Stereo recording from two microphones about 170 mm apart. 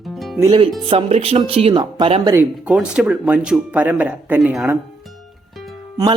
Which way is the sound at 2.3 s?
5° right (ahead or behind).